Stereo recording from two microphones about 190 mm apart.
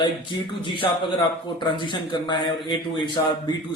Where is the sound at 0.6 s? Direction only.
25° left (ahead or behind).